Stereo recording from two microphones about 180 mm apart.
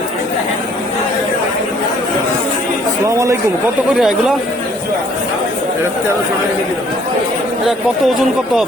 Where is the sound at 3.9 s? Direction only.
5° right (ahead or behind).